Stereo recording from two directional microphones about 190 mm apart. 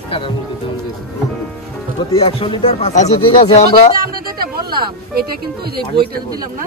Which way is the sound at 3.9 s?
50° right (ahead or behind).